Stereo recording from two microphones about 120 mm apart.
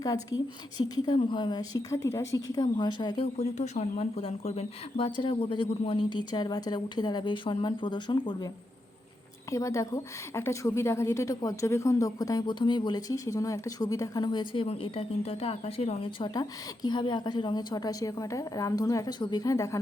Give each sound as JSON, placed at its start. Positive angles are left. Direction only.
{"t": 0.0, "sound": "a woman's voice", "side_deg": 30}
{"t": 0.9, "sound": "speech", "side_deg": 40}
{"t": 2.0, "sound": "speech", "side_deg": 20}
{"t": 3.3, "sound": "speech", "side_deg": 70}
{"t": 5.1, "sound": "speech", "side_deg": 45}
{"t": 9.5, "sound": "a woman's voice", "side_deg": 25}